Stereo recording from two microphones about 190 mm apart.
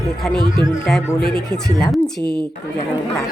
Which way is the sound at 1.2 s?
55° left (ahead or behind).